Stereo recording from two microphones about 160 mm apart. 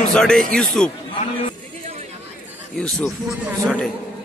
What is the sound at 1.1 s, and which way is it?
Speech, 35° left (ahead or behind).